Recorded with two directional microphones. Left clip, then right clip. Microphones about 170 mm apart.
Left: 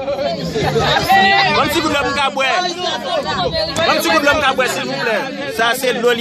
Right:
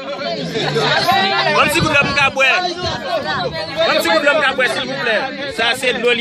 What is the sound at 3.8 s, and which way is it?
A man's voice, centre (ahead or behind).